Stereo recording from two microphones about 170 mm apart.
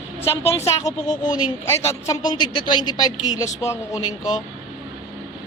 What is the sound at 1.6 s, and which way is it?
Speech, 15° left (ahead or behind).